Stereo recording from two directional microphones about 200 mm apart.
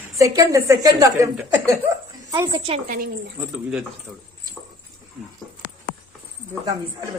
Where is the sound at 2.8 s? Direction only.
45° right (ahead or behind).